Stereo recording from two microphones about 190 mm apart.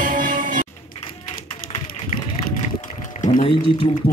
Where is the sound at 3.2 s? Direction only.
40° left (ahead or behind).